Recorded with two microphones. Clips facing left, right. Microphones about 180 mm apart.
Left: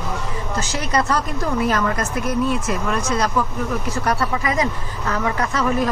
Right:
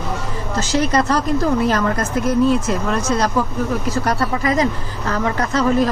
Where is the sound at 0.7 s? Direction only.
35° right (ahead or behind).